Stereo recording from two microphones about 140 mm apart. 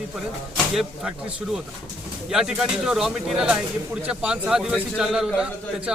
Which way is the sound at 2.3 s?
5° right (ahead or behind).